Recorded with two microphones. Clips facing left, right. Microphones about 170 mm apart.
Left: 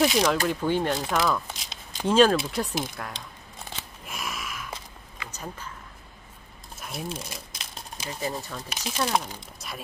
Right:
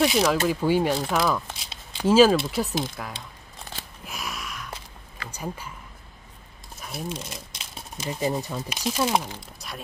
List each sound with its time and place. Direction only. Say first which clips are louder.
0.0 s speech: right 1 dB; 5° right (ahead or behind)
4.0 s a sound: even; centre (ahead or behind)
5.3 s speech: right 5 dB; 10° right (ahead or behind)
6.8 s a sound: right 1 dB; centre (ahead or behind)
8.1 s speech: right 5 dB; 20° right (ahead or behind)
8.5 s speech: right 4 dB; 5° right (ahead or behind)